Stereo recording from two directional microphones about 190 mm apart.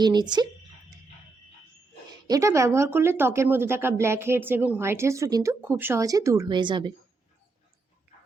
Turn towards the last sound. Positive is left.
turn(degrees=-25)  # may be behind; listen again after turning